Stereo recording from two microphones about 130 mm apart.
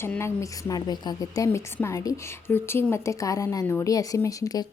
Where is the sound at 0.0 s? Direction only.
20° left (ahead or behind).